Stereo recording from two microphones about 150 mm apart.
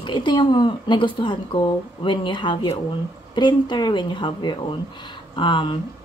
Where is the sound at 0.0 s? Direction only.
30° left (ahead or behind).